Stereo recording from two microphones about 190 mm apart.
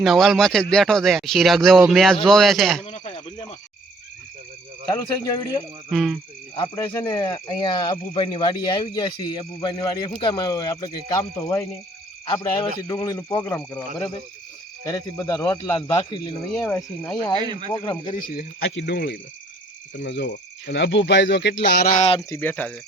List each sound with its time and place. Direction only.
0.0 s speech: centre (ahead or behind)
2.8 s a sound: 30° left (ahead or behind)
4.9 s speech: 20° left (ahead or behind)
5.9 s speech: centre (ahead or behind)
6.6 s speech: 20° left (ahead or behind)
16.6 s speech: 10° left (ahead or behind)
17.4 s speech: 25° right (ahead or behind)
17.7 s speech: 25° left (ahead or behind)
18.7 s speech: 65° left (ahead or behind)
20.0 s speech: 65° left (ahead or behind)
21.9 s speech: 30° left (ahead or behind)
22.3 s speech: 10° left (ahead or behind)